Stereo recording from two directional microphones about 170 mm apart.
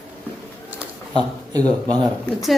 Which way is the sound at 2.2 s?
Centre (ahead or behind).